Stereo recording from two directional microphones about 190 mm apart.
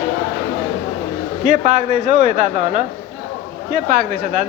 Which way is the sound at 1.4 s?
40° right (ahead or behind).